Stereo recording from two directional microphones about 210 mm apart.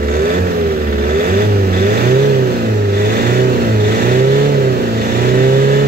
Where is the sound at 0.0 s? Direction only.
45° right (ahead or behind).